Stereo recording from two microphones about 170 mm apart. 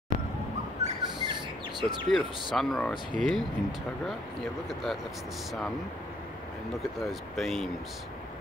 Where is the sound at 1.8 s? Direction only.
25° right (ahead or behind).